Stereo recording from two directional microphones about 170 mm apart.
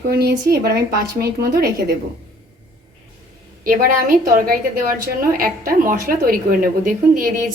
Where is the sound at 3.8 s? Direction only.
55° right (ahead or behind).